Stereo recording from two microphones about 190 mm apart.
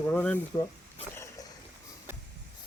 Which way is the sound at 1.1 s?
15° left (ahead or behind).